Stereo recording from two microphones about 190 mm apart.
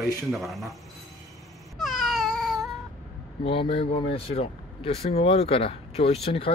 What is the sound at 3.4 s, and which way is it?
Speech, 30° left (ahead or behind).